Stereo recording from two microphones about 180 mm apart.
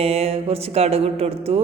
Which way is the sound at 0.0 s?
35° right (ahead or behind).